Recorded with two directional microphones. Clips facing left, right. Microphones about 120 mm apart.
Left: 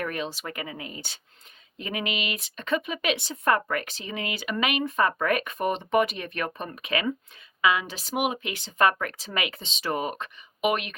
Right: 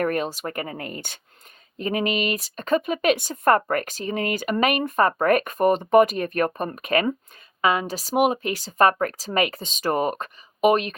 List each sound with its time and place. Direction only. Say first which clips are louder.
0.0 s speech: right 7 dB; 50° right (ahead or behind)
1.8 s speech: right 7 dB; 40° right (ahead or behind)